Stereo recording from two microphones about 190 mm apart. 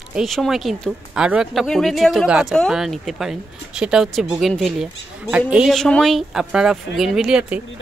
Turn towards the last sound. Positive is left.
turn(degrees=-5)  # may be behind; listen again after turning